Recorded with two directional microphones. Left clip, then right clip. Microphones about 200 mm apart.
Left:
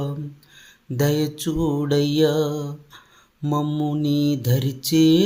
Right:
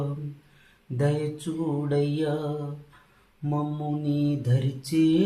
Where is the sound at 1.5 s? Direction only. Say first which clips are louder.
Left 6 dB; 50° left (ahead or behind).